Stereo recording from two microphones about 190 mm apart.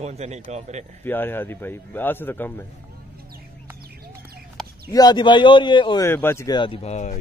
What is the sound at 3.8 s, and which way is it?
Bird, 55° right (ahead or behind).